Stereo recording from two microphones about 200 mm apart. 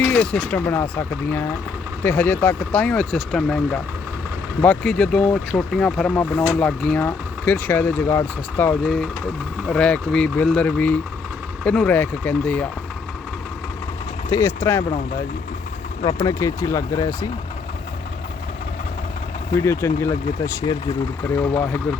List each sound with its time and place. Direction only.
0.0 s speech: 10° left (ahead or behind)
2.0 s speech: 10° left (ahead or behind)
14.3 s speech: 15° left (ahead or behind)
16.0 s speech: 20° left (ahead or behind)
19.5 s speech: 15° left (ahead or behind)